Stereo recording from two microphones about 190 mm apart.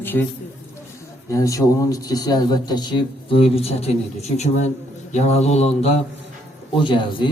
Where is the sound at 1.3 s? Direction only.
15° left (ahead or behind).